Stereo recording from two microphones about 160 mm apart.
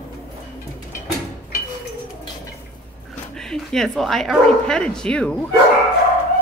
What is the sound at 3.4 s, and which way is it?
Speech, 5° left (ahead or behind).